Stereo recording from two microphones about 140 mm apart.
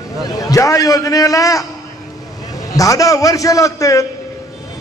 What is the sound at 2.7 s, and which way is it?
A man's voice, 25° left (ahead or behind).